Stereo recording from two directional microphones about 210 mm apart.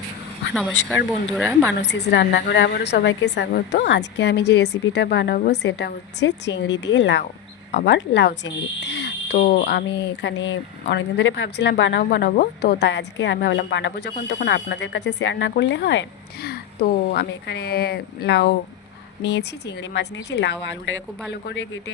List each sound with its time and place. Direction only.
0.5 s speech: 5° left (ahead or behind)
1.8 s speech: 55° left (ahead or behind)